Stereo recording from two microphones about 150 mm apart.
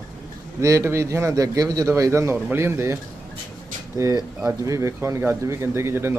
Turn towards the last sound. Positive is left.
turn(degrees=-15)  # may be behind; listen again after turning